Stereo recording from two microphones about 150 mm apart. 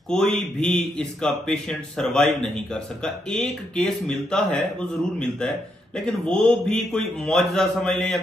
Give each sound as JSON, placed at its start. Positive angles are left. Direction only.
{"t": 0.1, "sound": "a man's voice", "side_deg": 5}